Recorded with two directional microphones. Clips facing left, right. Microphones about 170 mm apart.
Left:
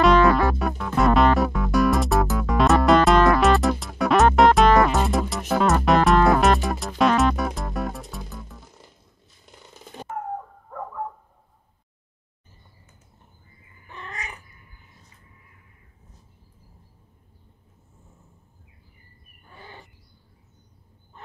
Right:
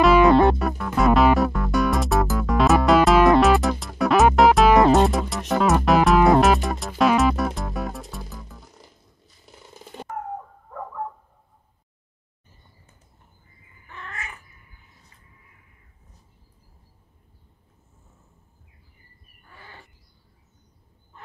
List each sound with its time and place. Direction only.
0.2 s music: 20° right (ahead or behind)
0.6 s music: centre (ahead or behind)
13.8 s cat: 15° left (ahead or behind)
19.4 s owl: 20° left (ahead or behind)